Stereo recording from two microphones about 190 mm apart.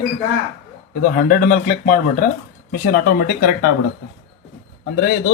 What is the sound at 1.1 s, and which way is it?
Speech, 50° left (ahead or behind).